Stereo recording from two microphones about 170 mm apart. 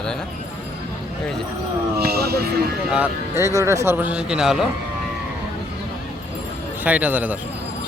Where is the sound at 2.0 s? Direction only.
65° right (ahead or behind).